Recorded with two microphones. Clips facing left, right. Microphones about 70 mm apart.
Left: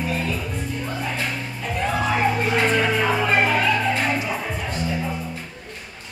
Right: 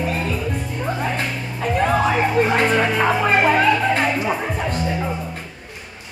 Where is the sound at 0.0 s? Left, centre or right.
Right.